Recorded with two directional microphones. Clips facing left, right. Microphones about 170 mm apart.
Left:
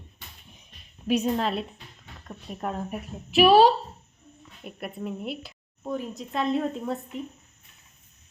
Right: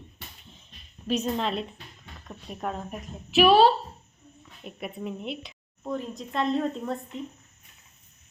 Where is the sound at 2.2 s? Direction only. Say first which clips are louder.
Left 1 dB; centre (ahead or behind).